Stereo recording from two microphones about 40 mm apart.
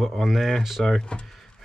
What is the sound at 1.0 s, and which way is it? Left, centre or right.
Speech, left.